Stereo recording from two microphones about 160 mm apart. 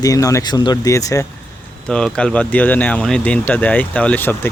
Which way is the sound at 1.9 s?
5° left (ahead or behind).